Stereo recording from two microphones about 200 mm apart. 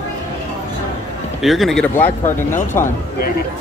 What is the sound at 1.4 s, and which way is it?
Speech, centre (ahead or behind).